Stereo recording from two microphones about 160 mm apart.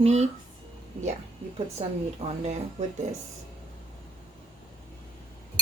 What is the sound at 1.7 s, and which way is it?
Speech, 45° right (ahead or behind).